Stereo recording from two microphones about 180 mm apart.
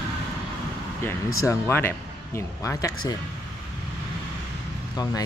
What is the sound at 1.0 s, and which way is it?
Speech, 15° left (ahead or behind).